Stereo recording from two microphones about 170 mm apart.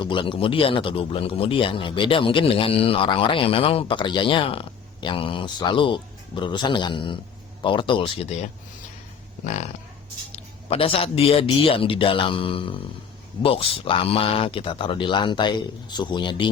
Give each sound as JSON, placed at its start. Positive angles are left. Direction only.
{"t": 0.0, "sound": "speech", "side_deg": 30}